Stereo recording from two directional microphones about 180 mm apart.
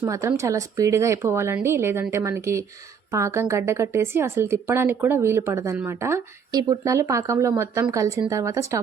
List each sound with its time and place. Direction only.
0.0 s a woman's voice: 15° right (ahead or behind)